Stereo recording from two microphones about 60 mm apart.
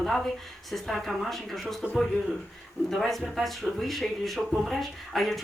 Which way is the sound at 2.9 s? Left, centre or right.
Centre.